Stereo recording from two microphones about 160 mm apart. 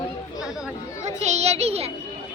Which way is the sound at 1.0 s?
45° right (ahead or behind).